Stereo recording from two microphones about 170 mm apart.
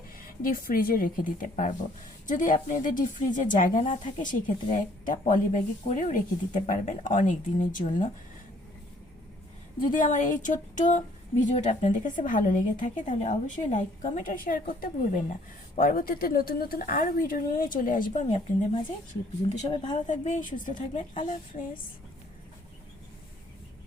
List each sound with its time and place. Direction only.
0.2 s a woman's voice: 55° left (ahead or behind)
9.9 s a woman's voice: 50° left (ahead or behind)
20.1 s a woman's voice: 45° left (ahead or behind)